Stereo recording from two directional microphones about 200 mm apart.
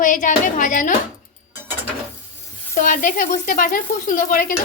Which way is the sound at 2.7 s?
45° left (ahead or behind).